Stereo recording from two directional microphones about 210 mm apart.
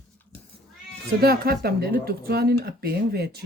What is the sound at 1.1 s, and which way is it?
Speech, 45° right (ahead or behind).